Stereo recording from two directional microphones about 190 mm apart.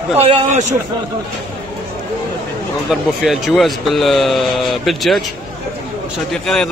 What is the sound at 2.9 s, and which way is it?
Speech, centre (ahead or behind).